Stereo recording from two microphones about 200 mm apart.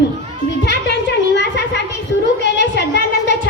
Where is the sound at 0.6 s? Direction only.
60° left (ahead or behind).